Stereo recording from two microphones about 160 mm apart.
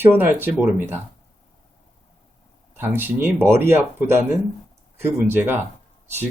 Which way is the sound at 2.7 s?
15° right (ahead or behind).